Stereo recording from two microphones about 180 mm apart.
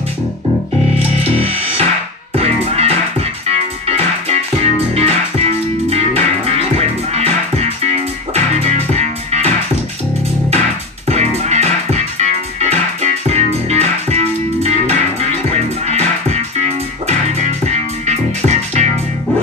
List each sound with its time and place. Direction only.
0.9 s music: 35° right (ahead or behind)
11.1 s music: 35° right (ahead or behind)